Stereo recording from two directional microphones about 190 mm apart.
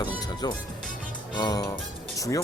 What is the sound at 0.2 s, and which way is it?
Music, 20° left (ahead or behind).